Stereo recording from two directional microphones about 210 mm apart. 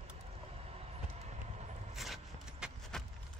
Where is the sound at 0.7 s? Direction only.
30° right (ahead or behind).